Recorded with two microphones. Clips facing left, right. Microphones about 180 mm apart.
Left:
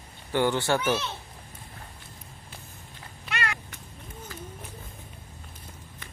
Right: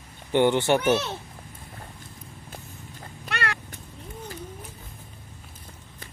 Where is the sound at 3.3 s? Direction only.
65° right (ahead or behind).